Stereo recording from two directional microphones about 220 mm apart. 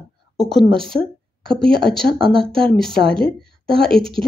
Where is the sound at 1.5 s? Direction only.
25° right (ahead or behind).